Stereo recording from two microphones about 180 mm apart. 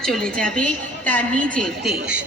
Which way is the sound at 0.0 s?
5° left (ahead or behind).